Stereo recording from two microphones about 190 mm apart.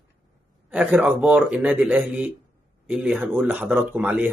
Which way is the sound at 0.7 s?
5° right (ahead or behind).